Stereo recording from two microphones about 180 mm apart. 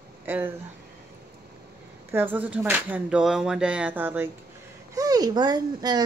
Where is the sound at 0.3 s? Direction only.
10° right (ahead or behind).